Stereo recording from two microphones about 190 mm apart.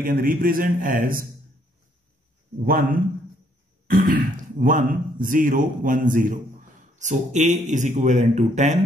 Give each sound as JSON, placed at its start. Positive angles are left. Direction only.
{"t": 0.0, "sound": "speech", "side_deg": -45}
{"t": 2.6, "sound": "speech", "side_deg": -45}